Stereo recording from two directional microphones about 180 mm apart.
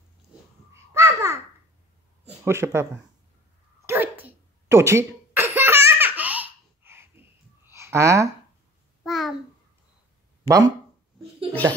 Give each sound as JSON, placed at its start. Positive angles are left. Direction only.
{"t": 0.9, "sound": "babbling", "side_deg": -15}
{"t": 2.4, "sound": "speech", "side_deg": -15}
{"t": 3.8, "sound": "a sound", "side_deg": -10}
{"t": 9.0, "sound": "babbling", "side_deg": 0}
{"t": 10.4, "sound": "speech", "side_deg": 15}